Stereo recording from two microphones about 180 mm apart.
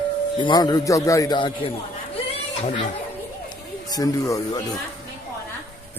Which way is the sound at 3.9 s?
20° left (ahead or behind).